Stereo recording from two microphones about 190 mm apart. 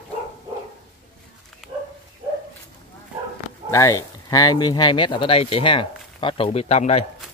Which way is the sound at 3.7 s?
15° left (ahead or behind).